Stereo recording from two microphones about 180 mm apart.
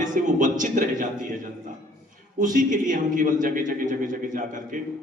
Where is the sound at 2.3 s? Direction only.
45° right (ahead or behind).